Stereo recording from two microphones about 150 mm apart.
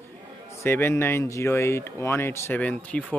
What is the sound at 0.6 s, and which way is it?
Speech, 15° left (ahead or behind).